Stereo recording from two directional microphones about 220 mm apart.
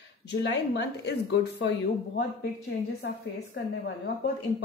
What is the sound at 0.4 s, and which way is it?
A woman's voice, 50° left (ahead or behind).